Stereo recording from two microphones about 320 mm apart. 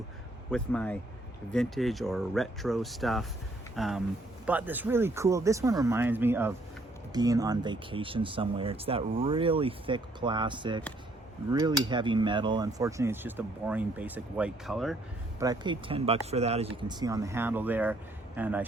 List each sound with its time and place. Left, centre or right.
0.5 s speech: centre
15.4 s speech: centre